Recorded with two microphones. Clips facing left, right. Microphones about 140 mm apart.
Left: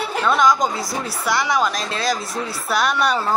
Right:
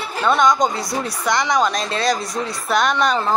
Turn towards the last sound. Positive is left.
turn(degrees=5)  # may be behind; listen again after turning